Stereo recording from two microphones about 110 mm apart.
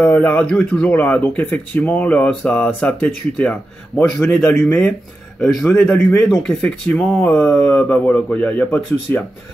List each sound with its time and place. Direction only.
0.0 s speech: 15° left (ahead or behind)
5.4 s a man's voice: centre (ahead or behind)